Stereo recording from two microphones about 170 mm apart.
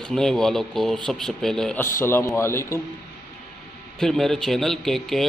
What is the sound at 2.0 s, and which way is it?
Speech, 15° left (ahead or behind).